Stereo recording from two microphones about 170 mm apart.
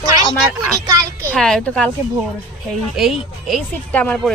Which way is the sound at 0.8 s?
15° right (ahead or behind).